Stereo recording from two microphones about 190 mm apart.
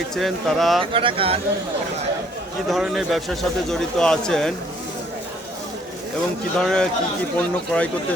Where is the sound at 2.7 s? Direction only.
Centre (ahead or behind).